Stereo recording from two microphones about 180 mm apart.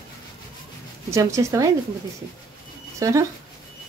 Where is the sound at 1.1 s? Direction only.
15° right (ahead or behind).